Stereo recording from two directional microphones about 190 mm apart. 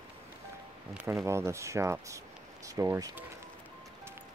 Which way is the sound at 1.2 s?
15° right (ahead or behind).